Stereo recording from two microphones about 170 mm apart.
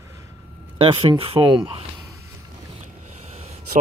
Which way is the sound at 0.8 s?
35° right (ahead or behind).